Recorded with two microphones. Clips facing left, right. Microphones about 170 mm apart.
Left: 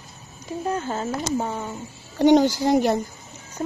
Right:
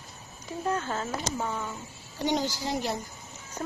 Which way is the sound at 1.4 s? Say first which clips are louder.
Left 4 dB; 35° left (ahead or behind).